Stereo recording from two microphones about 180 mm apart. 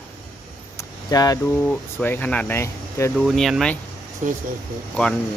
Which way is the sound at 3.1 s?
Centre (ahead or behind).